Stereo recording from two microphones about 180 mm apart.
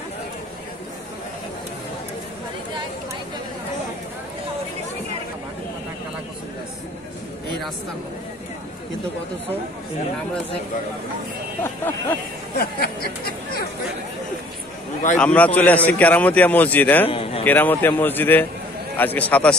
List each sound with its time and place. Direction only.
11.6 s a man's voice: 10° left (ahead or behind)
12.5 s speech: 60° left (ahead or behind)
15.1 s a man's voice: 10° left (ahead or behind)
17.1 s a man's voice: 30° left (ahead or behind)
17.5 s a man's voice: 10° left (ahead or behind)